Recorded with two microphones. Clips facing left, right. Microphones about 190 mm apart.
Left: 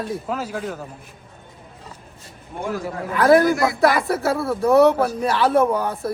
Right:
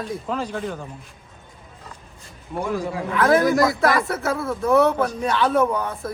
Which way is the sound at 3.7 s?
35° left (ahead or behind).